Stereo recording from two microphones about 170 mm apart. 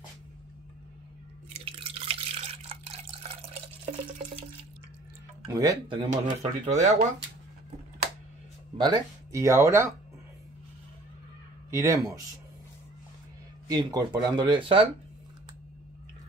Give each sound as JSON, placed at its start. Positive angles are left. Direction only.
{"t": 1.5, "sound": "drip", "side_deg": -35}
{"t": 5.5, "sound": "speech", "side_deg": -20}
{"t": 5.9, "sound": "speech", "side_deg": -45}
{"t": 8.7, "sound": "speech", "side_deg": -25}
{"t": 11.7, "sound": "speech", "side_deg": -15}
{"t": 13.7, "sound": "speech", "side_deg": -25}